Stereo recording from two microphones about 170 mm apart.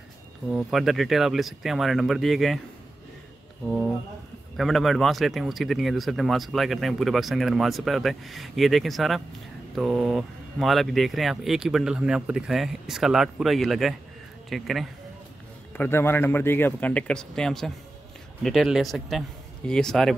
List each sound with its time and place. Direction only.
0.5 s speech: 5° right (ahead or behind)
3.6 s speech: 5° right (ahead or behind)
15.7 s a man's voice: 15° left (ahead or behind)